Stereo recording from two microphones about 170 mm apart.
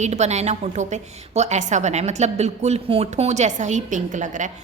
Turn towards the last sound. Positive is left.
turn(degrees=-45)  # may be behind; listen again after turning